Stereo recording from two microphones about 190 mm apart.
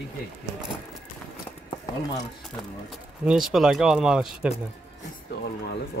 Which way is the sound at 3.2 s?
Centre (ahead or behind).